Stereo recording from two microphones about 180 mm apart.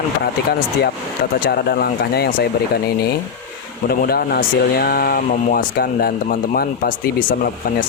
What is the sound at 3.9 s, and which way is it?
Speech, 60° left (ahead or behind).